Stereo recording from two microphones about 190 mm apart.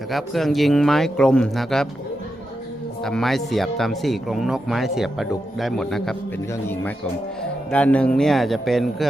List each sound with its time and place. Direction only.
0.1 s speech: centre (ahead or behind)
3.0 s speech: centre (ahead or behind)